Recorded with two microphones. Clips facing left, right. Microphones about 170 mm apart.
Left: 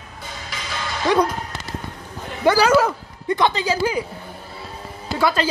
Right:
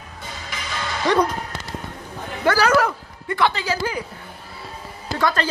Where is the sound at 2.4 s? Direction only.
15° left (ahead or behind).